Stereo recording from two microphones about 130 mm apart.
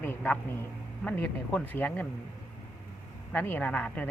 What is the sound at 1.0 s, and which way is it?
Speech, 10° left (ahead or behind).